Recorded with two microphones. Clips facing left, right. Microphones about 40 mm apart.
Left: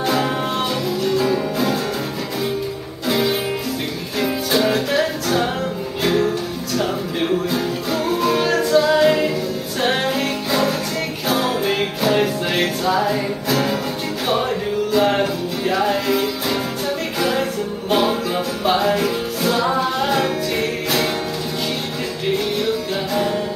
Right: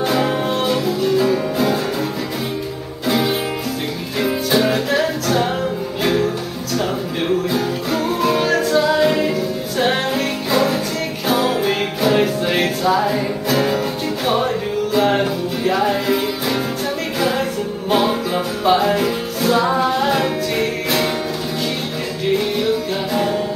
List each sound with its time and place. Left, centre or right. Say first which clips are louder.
0.0 s music: right 2 dB; centre
3.1 s music: right 1 dB; centre
23.1 s music: right 1 dB; centre